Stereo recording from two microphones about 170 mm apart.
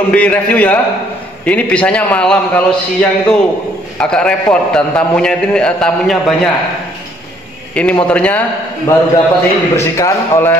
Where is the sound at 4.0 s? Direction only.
5° left (ahead or behind).